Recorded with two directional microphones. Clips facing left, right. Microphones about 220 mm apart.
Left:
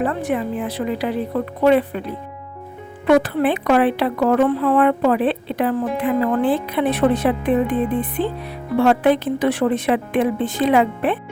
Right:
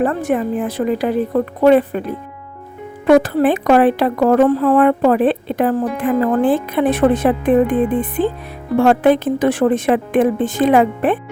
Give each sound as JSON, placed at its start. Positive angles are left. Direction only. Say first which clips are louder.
{"t": 0.0, "sound": "a woman's voice", "louder": "right 4 dB", "side_deg": -45}